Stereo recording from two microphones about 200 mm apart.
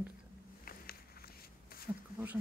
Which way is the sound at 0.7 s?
50° left (ahead or behind).